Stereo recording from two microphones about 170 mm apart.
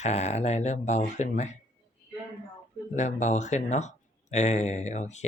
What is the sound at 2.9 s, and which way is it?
Speech, 45° left (ahead or behind).